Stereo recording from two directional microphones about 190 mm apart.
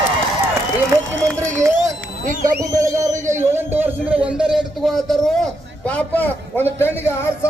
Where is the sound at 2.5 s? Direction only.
15° right (ahead or behind); by 5.4 s centre (ahead or behind).